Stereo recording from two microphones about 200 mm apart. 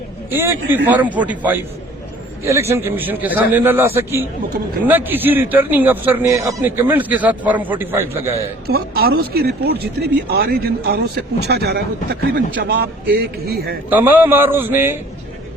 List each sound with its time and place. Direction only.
0.3 s speech: 10° right (ahead or behind)
8.6 s speech: 50° right (ahead or behind)
13.9 s speech: 10° right (ahead or behind)